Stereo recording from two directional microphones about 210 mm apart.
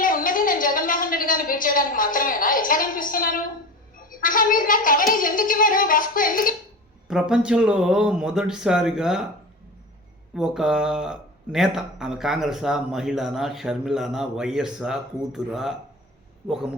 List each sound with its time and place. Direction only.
0.0 s a sound: 40° left (ahead or behind)
4.2 s speech: 40° left (ahead or behind)
7.1 s speech: 5° right (ahead or behind)
10.3 s speech: centre (ahead or behind)